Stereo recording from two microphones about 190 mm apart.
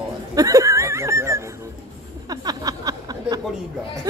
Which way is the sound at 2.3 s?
20° right (ahead or behind).